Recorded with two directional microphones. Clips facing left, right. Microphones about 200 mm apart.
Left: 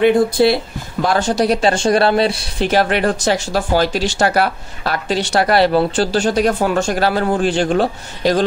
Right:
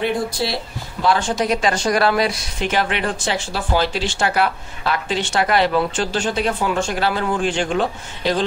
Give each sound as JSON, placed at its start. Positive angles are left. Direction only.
{"t": 0.0, "sound": "speech", "side_deg": 55}
{"t": 1.0, "sound": "speech", "side_deg": 40}